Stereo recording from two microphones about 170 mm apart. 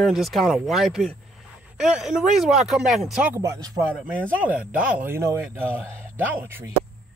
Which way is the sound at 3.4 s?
20° right (ahead or behind).